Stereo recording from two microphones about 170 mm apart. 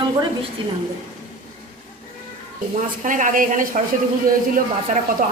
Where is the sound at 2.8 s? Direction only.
50° right (ahead or behind).